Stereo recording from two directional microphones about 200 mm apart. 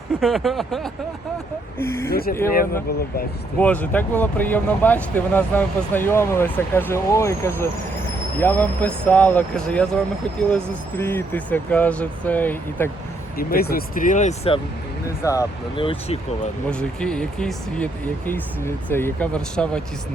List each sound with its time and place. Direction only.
0.2 s speech: centre (ahead or behind)
1.8 s speech: 10° left (ahead or behind)
2.0 s speech: 50° left (ahead or behind)
3.6 s speech: 10° left (ahead or behind)
13.3 s speech: 45° left (ahead or behind); by 14.6 s 30° left (ahead or behind)
15.2 s speech: 15° left (ahead or behind)
16.6 s speech: 5° left (ahead or behind)